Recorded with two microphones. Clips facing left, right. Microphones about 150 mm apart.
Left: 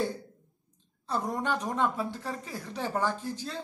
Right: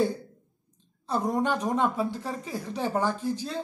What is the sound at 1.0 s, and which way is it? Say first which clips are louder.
A woman's voice: right 5 dB; 15° right (ahead or behind).